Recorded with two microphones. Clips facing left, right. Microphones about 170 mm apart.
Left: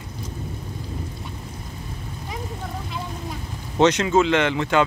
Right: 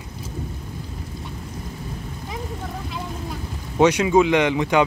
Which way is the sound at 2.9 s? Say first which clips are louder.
Right 1 dB; 5° right (ahead or behind).